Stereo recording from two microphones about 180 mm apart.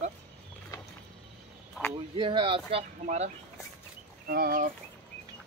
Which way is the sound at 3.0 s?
40° right (ahead or behind).